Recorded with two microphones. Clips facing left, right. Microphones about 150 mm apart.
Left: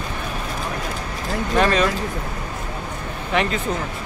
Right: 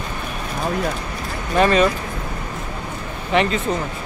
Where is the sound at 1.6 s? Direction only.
Centre (ahead or behind).